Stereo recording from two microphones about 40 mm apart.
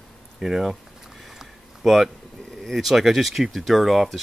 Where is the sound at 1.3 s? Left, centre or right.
Centre.